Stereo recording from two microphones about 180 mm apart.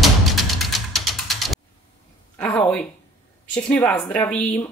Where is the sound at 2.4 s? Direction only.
15° left (ahead or behind).